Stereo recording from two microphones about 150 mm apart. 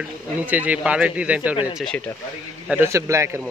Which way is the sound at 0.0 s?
10° right (ahead or behind).